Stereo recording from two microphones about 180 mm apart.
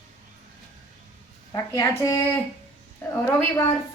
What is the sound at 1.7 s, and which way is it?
Speech, 15° left (ahead or behind).